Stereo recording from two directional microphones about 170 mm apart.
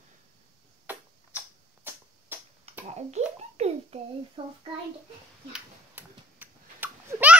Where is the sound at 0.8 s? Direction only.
10° right (ahead or behind).